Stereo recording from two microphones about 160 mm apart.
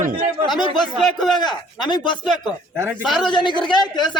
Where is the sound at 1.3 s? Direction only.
25° left (ahead or behind).